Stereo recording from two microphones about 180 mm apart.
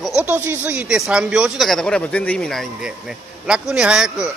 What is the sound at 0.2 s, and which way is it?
Speech, 10° right (ahead or behind).